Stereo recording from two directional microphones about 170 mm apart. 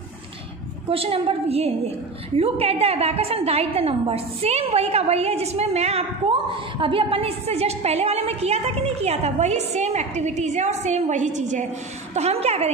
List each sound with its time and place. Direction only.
0.8 s a woman's voice: 35° right (ahead or behind)